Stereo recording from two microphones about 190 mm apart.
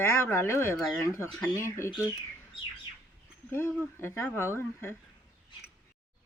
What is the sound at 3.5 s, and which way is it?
Speech, 10° left (ahead or behind).